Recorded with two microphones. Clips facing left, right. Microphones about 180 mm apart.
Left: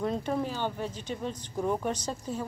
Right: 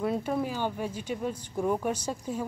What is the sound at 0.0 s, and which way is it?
Speech, 5° right (ahead or behind).